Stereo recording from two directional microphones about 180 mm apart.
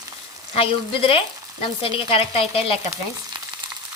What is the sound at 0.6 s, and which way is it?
Stir, 30° left (ahead or behind).